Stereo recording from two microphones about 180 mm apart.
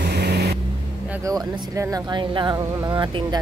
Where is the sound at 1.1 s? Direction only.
20° right (ahead or behind).